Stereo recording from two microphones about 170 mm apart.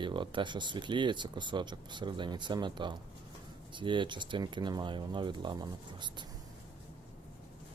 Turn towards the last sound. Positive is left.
turn(degrees=-25)  # may be behind; listen again after turning